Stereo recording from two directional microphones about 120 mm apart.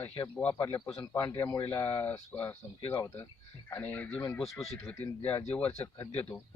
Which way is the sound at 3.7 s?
15° left (ahead or behind).